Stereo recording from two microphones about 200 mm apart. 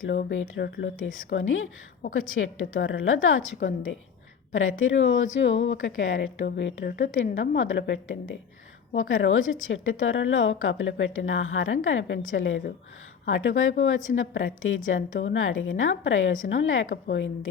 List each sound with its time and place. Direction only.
0.3 s a woman's voice: 75° left (ahead or behind)
0.6 s speech: 50° left (ahead or behind)
1.0 s a woman's voice: 80° left; by 7.1 s 55° left (ahead or behind)
7.3 s a woman's voice: 70° left (ahead or behind)
9.0 s a woman's voice: 80° left
16.9 s a woman's voice: 65° left (ahead or behind)